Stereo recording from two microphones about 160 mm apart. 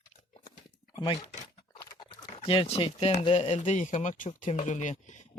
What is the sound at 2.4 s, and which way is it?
Speech, 35° left (ahead or behind).